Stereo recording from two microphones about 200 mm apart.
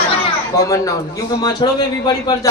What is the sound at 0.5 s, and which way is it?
A man's voice, 15° left (ahead or behind).